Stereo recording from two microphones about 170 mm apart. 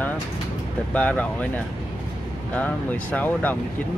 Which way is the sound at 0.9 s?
10° left (ahead or behind).